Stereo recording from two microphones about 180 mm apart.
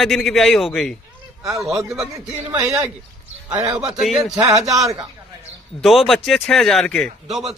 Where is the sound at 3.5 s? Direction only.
20° right (ahead or behind).